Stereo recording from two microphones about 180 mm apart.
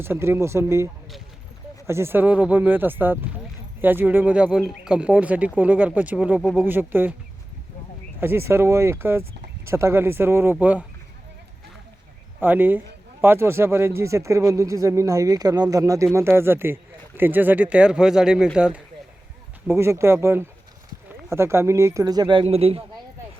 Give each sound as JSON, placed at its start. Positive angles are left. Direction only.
{"t": 0.0, "sound": "speech", "side_deg": -15}
{"t": 1.9, "sound": "speech", "side_deg": -15}
{"t": 8.2, "sound": "speech", "side_deg": -15}
{"t": 12.4, "sound": "speech", "side_deg": -10}